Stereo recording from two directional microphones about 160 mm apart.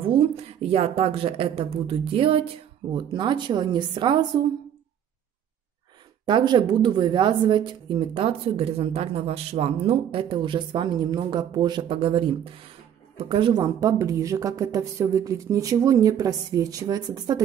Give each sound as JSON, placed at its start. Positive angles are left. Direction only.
{"t": 0.1, "sound": "speech", "side_deg": -35}
{"t": 6.2, "sound": "a woman's voice", "side_deg": -25}